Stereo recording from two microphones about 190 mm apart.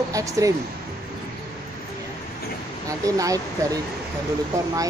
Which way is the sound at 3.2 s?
15° right (ahead or behind).